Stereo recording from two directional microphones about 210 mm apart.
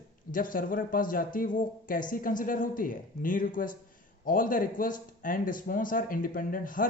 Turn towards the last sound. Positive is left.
turn(degrees=40)  # may be behind; listen again after turning